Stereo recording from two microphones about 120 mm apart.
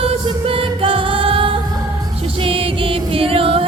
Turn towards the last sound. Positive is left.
turn(degrees=-50)  # may be behind; listen again after turning